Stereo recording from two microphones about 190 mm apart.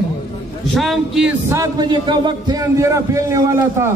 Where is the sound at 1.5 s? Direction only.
20° right (ahead or behind).